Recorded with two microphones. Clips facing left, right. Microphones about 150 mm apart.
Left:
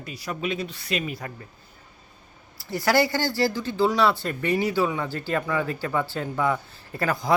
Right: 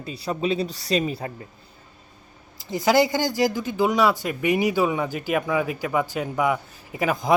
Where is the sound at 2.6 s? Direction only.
20° right (ahead or behind).